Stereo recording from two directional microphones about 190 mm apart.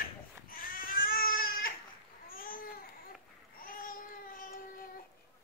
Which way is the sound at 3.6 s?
50° left (ahead or behind).